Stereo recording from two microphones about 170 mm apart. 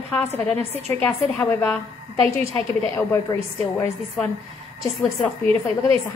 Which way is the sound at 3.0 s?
15° left (ahead or behind).